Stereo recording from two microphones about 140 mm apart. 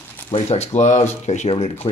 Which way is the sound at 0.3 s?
50° left (ahead or behind).